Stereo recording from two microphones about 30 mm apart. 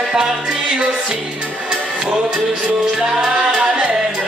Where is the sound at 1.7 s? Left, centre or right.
Right.